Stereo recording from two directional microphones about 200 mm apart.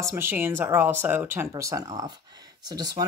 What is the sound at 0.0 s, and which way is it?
Speech, 10° right (ahead or behind).